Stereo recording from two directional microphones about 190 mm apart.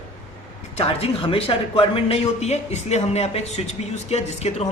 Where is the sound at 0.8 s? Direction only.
30° left (ahead or behind).